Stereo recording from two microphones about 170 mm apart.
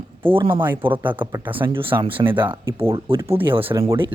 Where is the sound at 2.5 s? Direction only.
15° right (ahead or behind).